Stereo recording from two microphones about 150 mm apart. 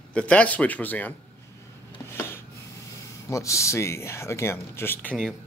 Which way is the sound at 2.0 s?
15° left (ahead or behind).